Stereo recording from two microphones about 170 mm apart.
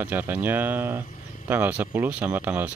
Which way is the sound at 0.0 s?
10° right (ahead or behind).